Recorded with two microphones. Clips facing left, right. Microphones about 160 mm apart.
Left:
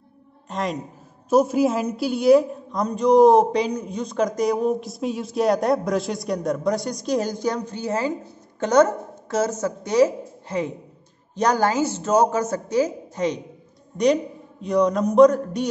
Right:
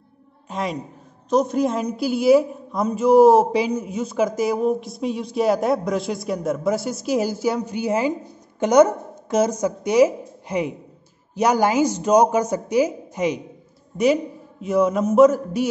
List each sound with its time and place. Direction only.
0.5 s a man's voice: centre (ahead or behind)